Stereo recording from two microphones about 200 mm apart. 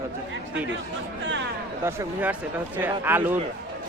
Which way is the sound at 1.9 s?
10° right (ahead or behind).